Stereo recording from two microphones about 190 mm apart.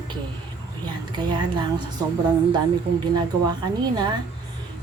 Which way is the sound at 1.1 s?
25° right (ahead or behind).